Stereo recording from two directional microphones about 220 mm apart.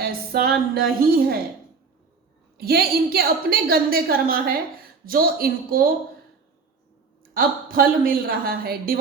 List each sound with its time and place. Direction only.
0.0 s music: 45° right (ahead or behind)
2.6 s a woman's voice: 45° right (ahead or behind)
7.3 s a woman's voice: 40° right (ahead or behind)